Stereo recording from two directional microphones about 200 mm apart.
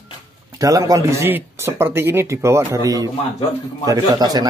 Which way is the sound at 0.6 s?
15° right (ahead or behind).